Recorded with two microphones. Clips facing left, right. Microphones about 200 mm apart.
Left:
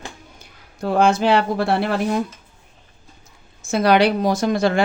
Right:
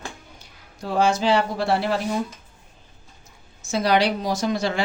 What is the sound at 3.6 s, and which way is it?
A woman's voice, 55° left (ahead or behind).